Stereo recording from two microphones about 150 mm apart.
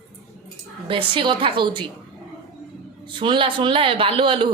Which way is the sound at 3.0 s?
35° right (ahead or behind).